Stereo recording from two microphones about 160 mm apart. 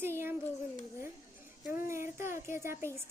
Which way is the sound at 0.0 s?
15° right (ahead or behind).